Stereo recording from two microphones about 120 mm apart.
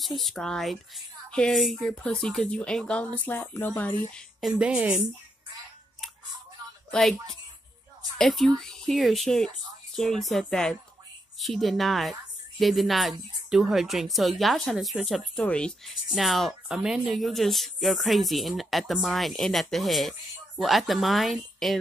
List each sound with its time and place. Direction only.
0.0 s speech: centre (ahead or behind)
4.1 s a woman's voice: centre (ahead or behind)
6.9 s speech: 5° left (ahead or behind)